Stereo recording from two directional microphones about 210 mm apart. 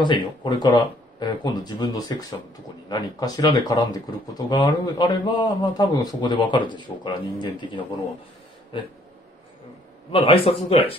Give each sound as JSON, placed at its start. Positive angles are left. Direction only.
{"t": 0.0, "sound": "a man's voice", "side_deg": 20}
{"t": 10.1, "sound": "a man's voice", "side_deg": 25}